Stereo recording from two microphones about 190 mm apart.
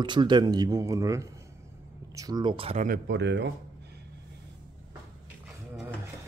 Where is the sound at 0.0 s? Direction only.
25° right (ahead or behind).